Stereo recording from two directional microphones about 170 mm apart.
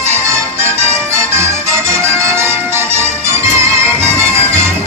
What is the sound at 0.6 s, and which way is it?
Music, 15° right (ahead or behind).